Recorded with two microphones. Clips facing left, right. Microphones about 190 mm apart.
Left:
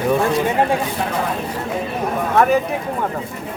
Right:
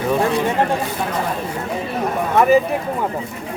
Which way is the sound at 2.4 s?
5° right (ahead or behind).